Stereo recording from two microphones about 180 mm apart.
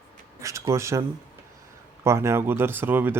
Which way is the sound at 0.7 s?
15° right (ahead or behind).